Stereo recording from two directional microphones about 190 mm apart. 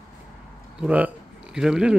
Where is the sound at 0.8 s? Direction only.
5° right (ahead or behind).